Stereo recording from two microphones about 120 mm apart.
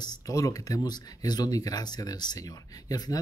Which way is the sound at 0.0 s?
30° left (ahead or behind).